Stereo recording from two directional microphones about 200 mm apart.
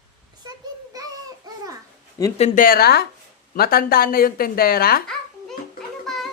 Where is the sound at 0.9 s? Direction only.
15° right (ahead or behind).